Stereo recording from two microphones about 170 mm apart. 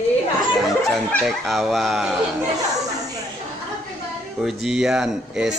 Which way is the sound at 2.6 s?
20° right (ahead or behind).